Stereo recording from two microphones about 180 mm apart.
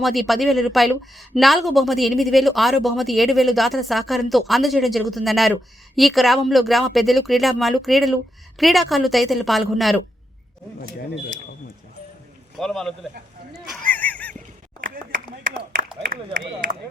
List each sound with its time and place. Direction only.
0.0 s speech: centre (ahead or behind)
12.5 s speech: centre (ahead or behind)
13.5 s goose: centre (ahead or behind)
16.0 s speech: 50° right (ahead or behind)